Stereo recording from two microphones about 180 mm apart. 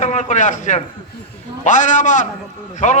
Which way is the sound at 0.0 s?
40° left (ahead or behind).